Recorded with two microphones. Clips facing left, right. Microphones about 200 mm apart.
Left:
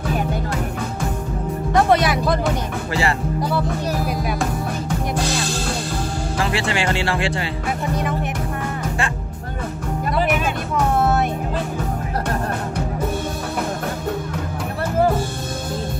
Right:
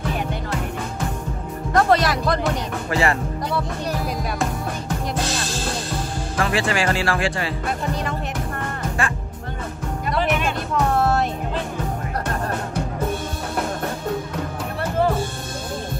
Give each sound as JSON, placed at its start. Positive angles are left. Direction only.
{"t": 1.7, "sound": "music", "side_deg": 0}
{"t": 2.9, "sound": "speech", "side_deg": 30}
{"t": 3.3, "sound": "music", "side_deg": 5}
{"t": 6.5, "sound": "speech", "side_deg": 25}
{"t": 10.1, "sound": "music", "side_deg": 5}